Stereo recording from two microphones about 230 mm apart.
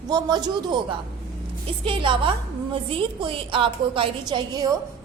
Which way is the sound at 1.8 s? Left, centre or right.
Right.